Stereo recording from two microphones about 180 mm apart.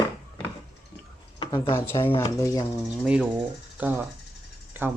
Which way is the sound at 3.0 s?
5° right (ahead or behind).